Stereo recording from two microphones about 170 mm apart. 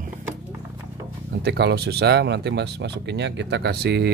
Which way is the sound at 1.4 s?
75° right (ahead or behind).